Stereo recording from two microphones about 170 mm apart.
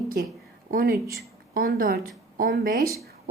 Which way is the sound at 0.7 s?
70° right (ahead or behind).